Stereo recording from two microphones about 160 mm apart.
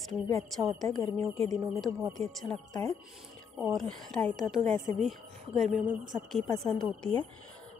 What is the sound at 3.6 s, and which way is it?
Speech, centre (ahead or behind).